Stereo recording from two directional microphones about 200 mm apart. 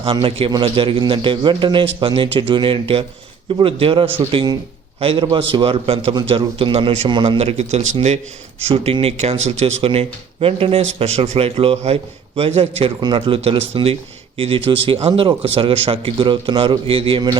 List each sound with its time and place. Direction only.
0.0 s a man's voice: 25° right (ahead or behind)